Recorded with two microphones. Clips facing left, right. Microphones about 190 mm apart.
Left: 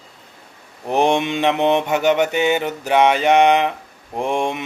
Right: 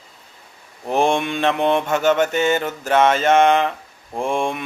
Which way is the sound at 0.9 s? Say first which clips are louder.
Left 1 dB; 20° left (ahead or behind).